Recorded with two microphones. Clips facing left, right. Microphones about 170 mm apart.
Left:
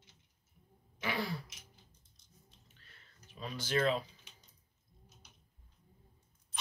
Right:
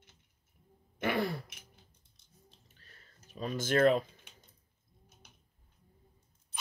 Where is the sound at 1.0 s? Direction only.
55° right (ahead or behind).